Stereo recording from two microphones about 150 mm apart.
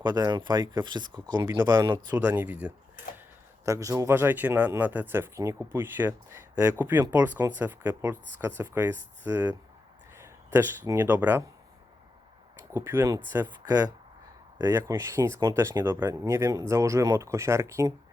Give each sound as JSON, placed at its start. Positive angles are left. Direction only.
{"t": 0.0, "sound": "speech", "side_deg": -30}
{"t": 2.1, "sound": "speech", "side_deg": -10}
{"t": 3.7, "sound": "speech", "side_deg": -20}
{"t": 12.7, "sound": "speech", "side_deg": -15}